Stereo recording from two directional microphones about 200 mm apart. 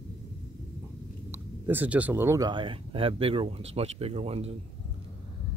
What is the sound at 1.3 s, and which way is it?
Speech, 10° right (ahead or behind).